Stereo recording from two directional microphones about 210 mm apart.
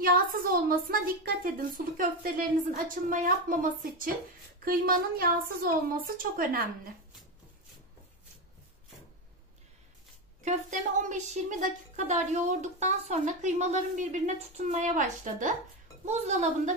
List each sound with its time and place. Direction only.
0.0 s a woman's voice: 45° right (ahead or behind)
10.4 s speech: 35° right (ahead or behind)